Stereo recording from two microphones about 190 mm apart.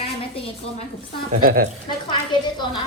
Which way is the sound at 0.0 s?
30° left (ahead or behind).